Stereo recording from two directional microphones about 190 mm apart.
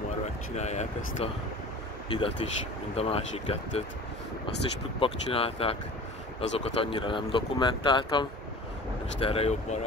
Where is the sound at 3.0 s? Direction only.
30° left (ahead or behind).